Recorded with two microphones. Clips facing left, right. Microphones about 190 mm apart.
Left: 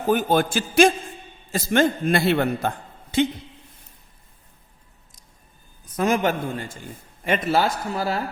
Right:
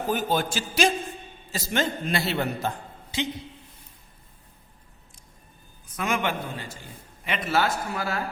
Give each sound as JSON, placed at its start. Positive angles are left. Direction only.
{"t": 0.1, "sound": "a man's voice", "side_deg": 55}
{"t": 6.0, "sound": "a man's voice", "side_deg": 40}
{"t": 7.5, "sound": "speech", "side_deg": 35}